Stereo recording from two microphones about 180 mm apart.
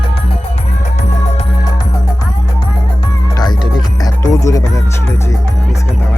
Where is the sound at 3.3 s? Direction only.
25° left (ahead or behind).